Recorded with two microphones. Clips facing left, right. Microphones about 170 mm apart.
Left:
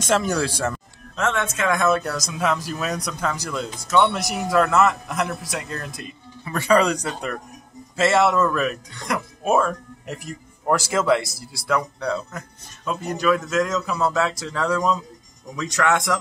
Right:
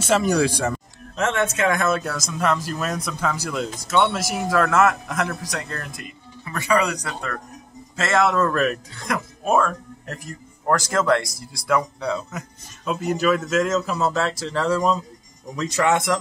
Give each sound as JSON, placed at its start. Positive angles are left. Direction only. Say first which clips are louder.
{"t": 0.0, "sound": "speech", "louder": "right 2 dB", "side_deg": -10}
{"t": 5.7, "sound": "speech", "louder": "left 1 dB", "side_deg": 20}
{"t": 7.9, "sound": "speech", "louder": "left 2 dB", "side_deg": 5}